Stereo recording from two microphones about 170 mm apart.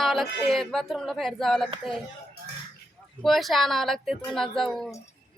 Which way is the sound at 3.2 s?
Centre (ahead or behind).